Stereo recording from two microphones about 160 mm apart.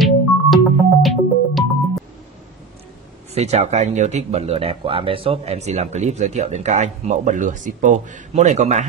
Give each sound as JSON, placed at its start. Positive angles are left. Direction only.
{"t": 0.0, "sound": "music", "side_deg": 0}
{"t": 3.3, "sound": "speech", "side_deg": -40}